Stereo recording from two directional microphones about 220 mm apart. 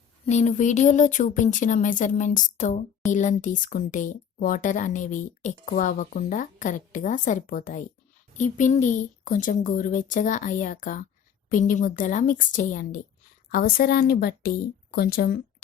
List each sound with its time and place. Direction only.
0.3 s speech: 30° left (ahead or behind)